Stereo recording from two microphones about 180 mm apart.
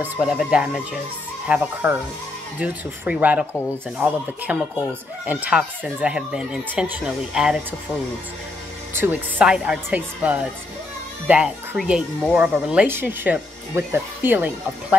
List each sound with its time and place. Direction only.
0.0 s speech: 5° right (ahead or behind)
8.9 s speech: 10° right (ahead or behind)